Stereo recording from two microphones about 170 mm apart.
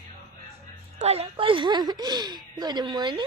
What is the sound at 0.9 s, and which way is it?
Speech, 40° right (ahead or behind).